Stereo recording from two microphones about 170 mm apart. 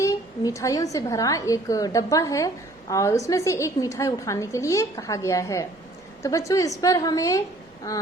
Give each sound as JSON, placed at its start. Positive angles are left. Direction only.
{"t": 0.0, "sound": "a woman's voice", "side_deg": 20}